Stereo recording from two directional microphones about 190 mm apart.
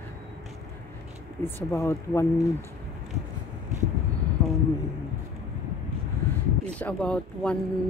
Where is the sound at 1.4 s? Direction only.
15° left (ahead or behind).